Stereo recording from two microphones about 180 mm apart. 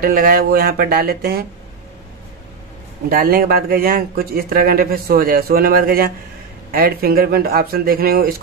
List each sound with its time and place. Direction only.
0.0 s a man's voice: 50° right (ahead or behind)
3.1 s a man's voice: 55° right (ahead or behind)